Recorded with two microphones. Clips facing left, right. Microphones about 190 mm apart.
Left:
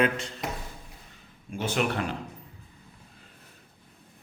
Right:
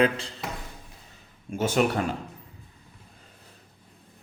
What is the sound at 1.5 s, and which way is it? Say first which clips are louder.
Speech: right 4 dB; 45° right (ahead or behind).